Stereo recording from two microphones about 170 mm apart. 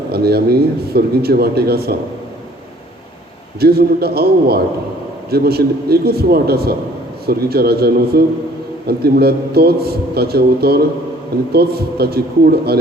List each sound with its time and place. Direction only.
0.1 s a man's voice: 70° right (ahead or behind)
3.6 s a man's voice: 65° right (ahead or behind)